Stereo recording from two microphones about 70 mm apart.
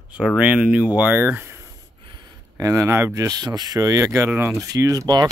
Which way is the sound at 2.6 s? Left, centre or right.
Right.